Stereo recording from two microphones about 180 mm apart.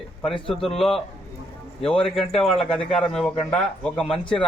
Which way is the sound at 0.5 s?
Centre (ahead or behind).